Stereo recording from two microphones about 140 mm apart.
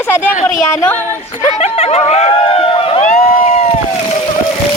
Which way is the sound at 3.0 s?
60° left (ahead or behind).